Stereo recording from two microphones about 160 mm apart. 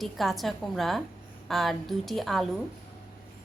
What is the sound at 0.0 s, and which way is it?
A woman's voice, centre (ahead or behind).